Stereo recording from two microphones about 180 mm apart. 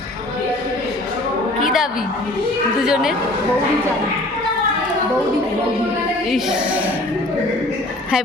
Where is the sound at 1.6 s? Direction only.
Centre (ahead or behind).